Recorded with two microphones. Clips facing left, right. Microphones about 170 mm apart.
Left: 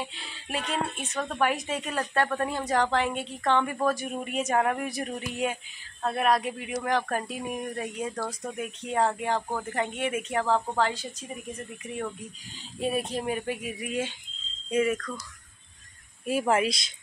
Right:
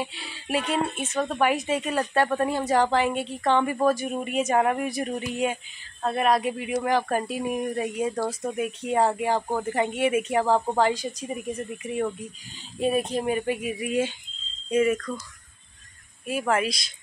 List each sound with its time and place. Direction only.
0.0 s a woman's voice: 5° right (ahead or behind)
16.3 s speech: 30° left (ahead or behind)